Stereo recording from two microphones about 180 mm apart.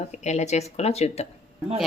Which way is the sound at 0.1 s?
40° left (ahead or behind).